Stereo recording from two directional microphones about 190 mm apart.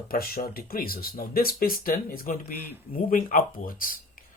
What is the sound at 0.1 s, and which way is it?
Speech, 50° left (ahead or behind).